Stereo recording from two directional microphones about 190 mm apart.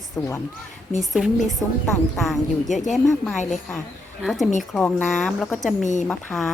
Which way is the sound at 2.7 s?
40° left (ahead or behind).